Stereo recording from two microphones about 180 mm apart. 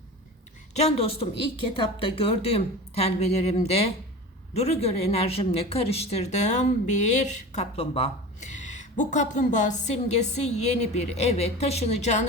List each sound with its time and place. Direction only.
0.7 s speech: 35° left (ahead or behind)